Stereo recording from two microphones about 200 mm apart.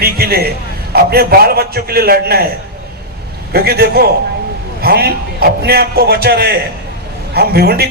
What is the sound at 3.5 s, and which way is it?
A man's voice, 50° right (ahead or behind).